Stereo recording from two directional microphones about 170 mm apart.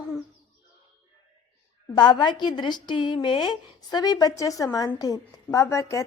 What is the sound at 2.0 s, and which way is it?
A woman's voice, 25° left (ahead or behind).